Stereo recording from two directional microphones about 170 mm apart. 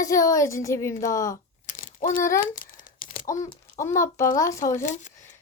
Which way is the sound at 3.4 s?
20° left (ahead or behind).